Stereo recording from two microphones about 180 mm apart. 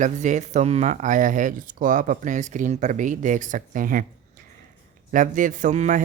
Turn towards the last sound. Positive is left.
turn(degrees=-40)  # may be behind; listen again after turning